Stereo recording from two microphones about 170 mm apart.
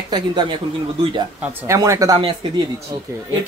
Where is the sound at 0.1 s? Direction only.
25° right (ahead or behind).